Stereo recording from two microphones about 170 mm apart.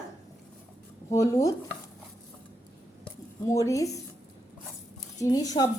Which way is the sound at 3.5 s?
20° left (ahead or behind).